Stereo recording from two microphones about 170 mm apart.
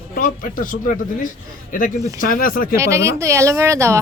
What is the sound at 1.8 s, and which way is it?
Speech, 55° left (ahead or behind).